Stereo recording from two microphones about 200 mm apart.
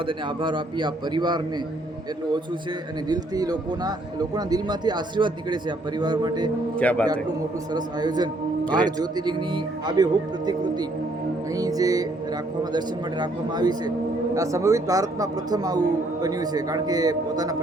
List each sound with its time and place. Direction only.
0.0 s speech: 25° right (ahead or behind)
3.1 s speech: 20° right (ahead or behind)
6.7 s a man's voice: 5° left (ahead or behind)
7.1 s speech: 20° right (ahead or behind)
11.5 s music: 20° right (ahead or behind)
12.7 s speech: 20° right (ahead or behind)